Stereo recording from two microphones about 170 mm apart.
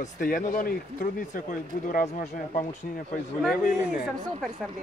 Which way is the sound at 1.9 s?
45° left (ahead or behind).